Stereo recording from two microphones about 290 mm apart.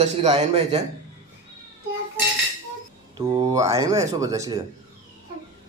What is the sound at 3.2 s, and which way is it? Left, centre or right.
Speech, centre.